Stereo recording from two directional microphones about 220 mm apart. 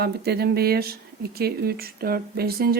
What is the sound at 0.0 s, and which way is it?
Speech, 45° right (ahead or behind).